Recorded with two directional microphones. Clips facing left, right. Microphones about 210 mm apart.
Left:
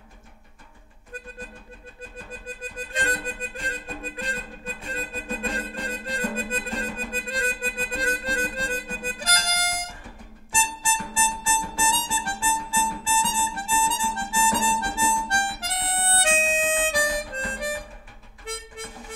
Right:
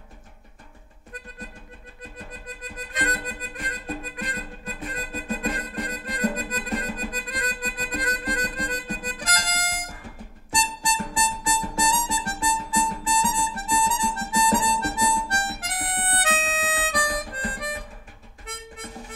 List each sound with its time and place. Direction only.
2.0 s music: 30° left (ahead or behind)
18.4 s harmonica: 30° left (ahead or behind)